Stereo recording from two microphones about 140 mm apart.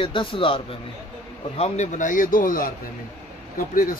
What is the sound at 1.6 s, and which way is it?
Speech, 55° left (ahead or behind).